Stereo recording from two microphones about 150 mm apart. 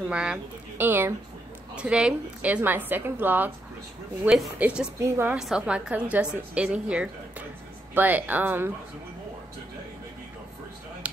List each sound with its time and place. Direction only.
0.1 s a woman's voice: 5° right (ahead or behind)
4.9 s a woman's voice: 20° right (ahead or behind)
5.4 s a woman's voice: 5° right (ahead or behind)